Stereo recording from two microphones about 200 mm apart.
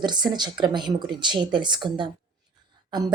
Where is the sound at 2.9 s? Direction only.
20° right (ahead or behind).